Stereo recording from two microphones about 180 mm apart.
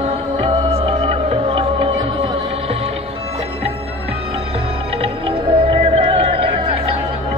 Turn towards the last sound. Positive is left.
turn(degrees=-30)  # may be behind; listen again after turning